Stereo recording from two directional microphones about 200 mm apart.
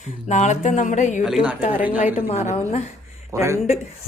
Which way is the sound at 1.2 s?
Centre (ahead or behind).